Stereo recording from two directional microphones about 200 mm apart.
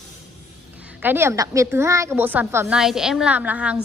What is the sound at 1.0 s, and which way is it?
A woman's voice, 10° right (ahead or behind).